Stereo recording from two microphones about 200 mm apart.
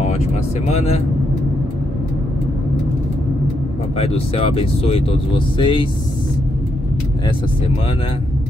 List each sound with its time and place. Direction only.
0.0 s speech: 35° left (ahead or behind)
4.0 s speech: 30° left (ahead or behind)